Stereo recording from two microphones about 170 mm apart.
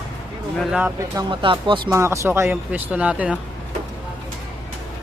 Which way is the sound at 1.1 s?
30° right (ahead or behind).